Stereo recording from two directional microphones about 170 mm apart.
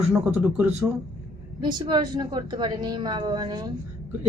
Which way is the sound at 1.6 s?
25° right (ahead or behind).